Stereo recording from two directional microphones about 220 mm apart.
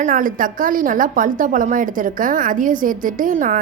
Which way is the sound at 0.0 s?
40° right (ahead or behind).